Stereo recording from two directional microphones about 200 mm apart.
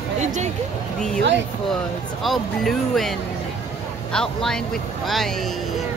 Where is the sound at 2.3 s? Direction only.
Centre (ahead or behind).